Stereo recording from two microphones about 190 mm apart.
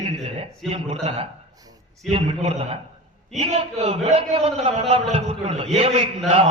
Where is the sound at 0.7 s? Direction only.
35° right (ahead or behind).